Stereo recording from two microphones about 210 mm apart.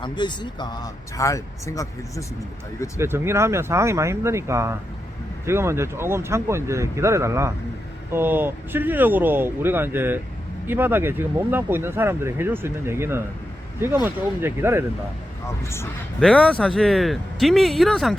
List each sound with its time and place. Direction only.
0.0 s speech: 20° left (ahead or behind)
3.0 s speech: 10° right (ahead or behind)
15.4 s speech: 10° left (ahead or behind)